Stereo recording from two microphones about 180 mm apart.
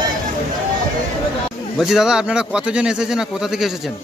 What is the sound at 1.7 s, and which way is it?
Speech, centre (ahead or behind).